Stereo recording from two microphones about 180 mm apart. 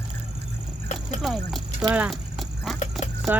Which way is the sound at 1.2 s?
Centre (ahead or behind).